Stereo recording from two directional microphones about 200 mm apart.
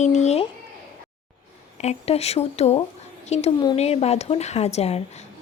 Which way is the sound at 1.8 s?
30° left (ahead or behind).